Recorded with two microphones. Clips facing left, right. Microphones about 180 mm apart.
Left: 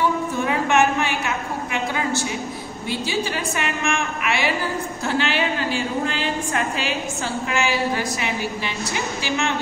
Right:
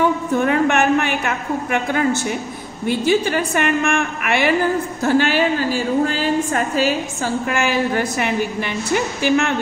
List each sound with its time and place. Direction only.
0.4 s a woman's voice: 60° right (ahead or behind); by 6.9 s 40° right (ahead or behind)
7.4 s a woman's voice: 55° right (ahead or behind)